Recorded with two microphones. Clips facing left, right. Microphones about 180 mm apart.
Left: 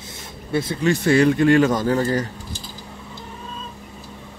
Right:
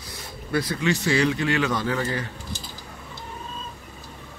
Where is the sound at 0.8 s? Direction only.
50° left (ahead or behind).